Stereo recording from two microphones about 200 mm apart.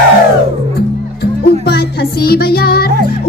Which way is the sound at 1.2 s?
50° left (ahead or behind).